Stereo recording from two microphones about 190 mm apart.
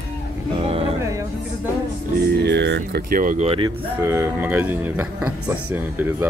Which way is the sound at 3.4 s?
25° right (ahead or behind).